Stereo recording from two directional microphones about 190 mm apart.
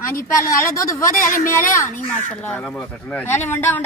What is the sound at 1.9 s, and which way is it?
Speech, 45° left (ahead or behind).